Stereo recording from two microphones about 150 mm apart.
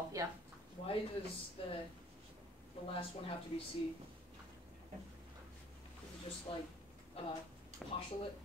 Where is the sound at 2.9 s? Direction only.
40° left (ahead or behind).